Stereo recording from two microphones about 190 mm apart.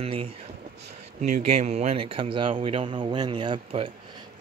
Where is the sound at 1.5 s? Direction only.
35° right (ahead or behind).